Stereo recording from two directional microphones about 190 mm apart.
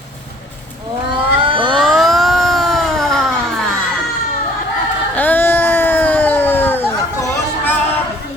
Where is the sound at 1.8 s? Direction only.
Centre (ahead or behind).